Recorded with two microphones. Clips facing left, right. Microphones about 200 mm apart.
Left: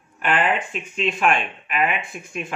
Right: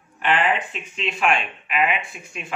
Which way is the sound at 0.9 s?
45° left (ahead or behind).